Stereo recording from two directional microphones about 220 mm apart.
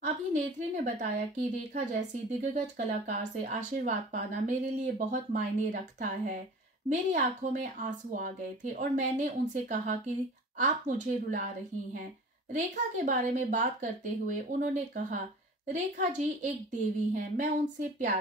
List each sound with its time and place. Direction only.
0.0 s a woman's voice: 35° right (ahead or behind)
12.5 s speech: 35° right (ahead or behind)